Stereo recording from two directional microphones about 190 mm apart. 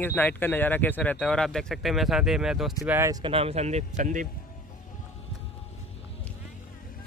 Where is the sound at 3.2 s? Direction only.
30° right (ahead or behind).